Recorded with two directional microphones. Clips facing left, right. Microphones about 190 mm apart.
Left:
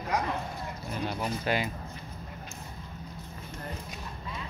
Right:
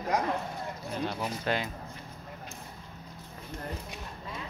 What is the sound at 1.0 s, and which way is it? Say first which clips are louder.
Speech: left 1 dB; 10° left (ahead or behind).